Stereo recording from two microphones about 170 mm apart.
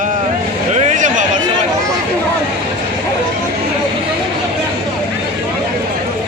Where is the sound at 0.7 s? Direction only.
45° right (ahead or behind).